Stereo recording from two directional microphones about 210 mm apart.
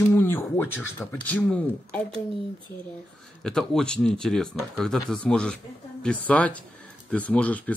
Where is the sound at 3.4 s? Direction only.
Centre (ahead or behind).